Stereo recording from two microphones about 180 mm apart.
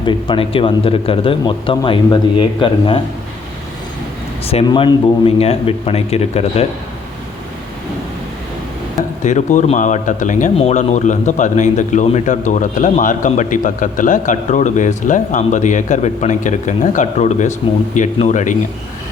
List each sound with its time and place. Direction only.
0.0 s speech: 25° left (ahead or behind)
4.4 s speech: 30° left (ahead or behind)
9.2 s speech: 45° left (ahead or behind)